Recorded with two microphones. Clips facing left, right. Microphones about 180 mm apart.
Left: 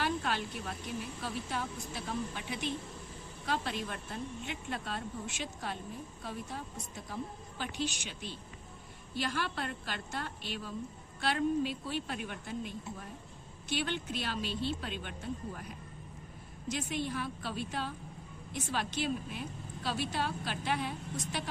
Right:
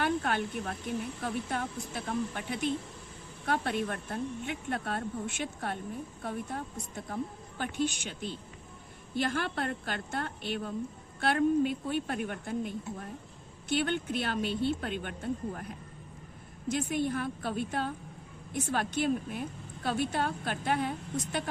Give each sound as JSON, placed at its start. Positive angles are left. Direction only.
{"t": 0.0, "sound": "snake", "side_deg": -55}
{"t": 1.2, "sound": "a woman's voice", "side_deg": -55}
{"t": 16.6, "sound": "a woman's voice", "side_deg": -50}